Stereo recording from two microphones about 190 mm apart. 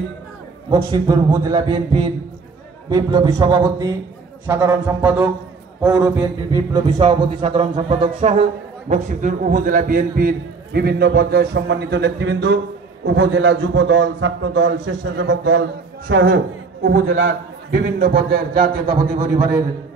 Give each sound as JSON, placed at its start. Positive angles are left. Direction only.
{"t": 0.7, "sound": "a man's voice", "side_deg": -15}
{"t": 6.9, "sound": "a man's voice", "side_deg": -35}
{"t": 16.1, "sound": "a man's voice", "side_deg": -90}
{"t": 17.7, "sound": "a man's voice", "side_deg": -55}